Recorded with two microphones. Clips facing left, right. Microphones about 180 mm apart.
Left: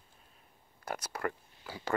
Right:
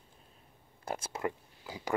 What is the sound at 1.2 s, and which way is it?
Speech, 15° right (ahead or behind).